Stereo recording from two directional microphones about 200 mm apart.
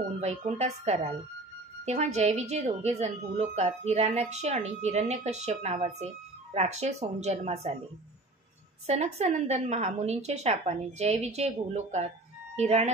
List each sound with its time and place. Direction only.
0.2 s a woman's voice: 35° right (ahead or behind)
8.8 s a woman's voice: 35° right (ahead or behind)